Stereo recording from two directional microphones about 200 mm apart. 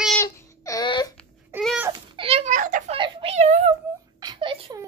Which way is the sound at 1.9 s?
25° right (ahead or behind).